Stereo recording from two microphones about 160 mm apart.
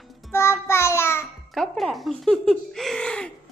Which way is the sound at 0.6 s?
15° left (ahead or behind).